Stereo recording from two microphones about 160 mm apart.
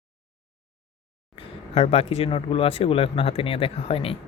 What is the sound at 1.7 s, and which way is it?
Speech, 40° left (ahead or behind).